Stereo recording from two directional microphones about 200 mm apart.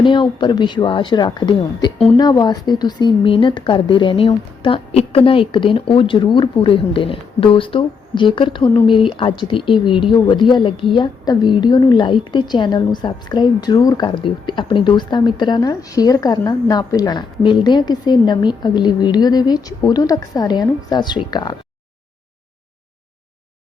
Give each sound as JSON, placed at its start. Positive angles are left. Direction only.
{"t": 0.0, "sound": "a woman's voice", "side_deg": 25}